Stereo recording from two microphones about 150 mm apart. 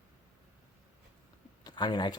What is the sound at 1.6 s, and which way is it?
Speech, 30° left (ahead or behind).